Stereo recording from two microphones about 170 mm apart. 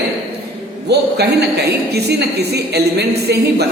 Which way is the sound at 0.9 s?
75° right (ahead or behind).